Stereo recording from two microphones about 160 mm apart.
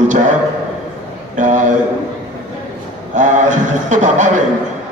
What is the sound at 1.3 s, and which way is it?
Speech, 50° right (ahead or behind).